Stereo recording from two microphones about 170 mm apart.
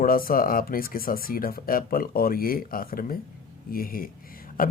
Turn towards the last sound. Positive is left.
turn(degrees=55)  # may be behind; listen again after turning